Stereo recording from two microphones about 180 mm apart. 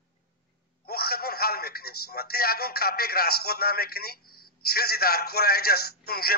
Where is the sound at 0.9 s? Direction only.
55° left (ahead or behind).